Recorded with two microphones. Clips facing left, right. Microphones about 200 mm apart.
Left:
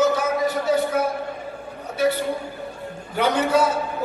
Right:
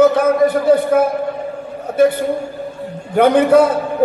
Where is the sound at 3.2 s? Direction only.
55° right (ahead or behind).